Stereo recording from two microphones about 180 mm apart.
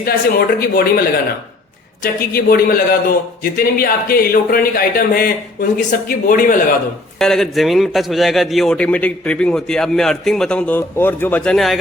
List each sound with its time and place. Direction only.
0.0 s a man's voice: 60° left (ahead or behind)
2.3 s a man's voice: 55° left (ahead or behind)
7.2 s a man's voice: centre (ahead or behind)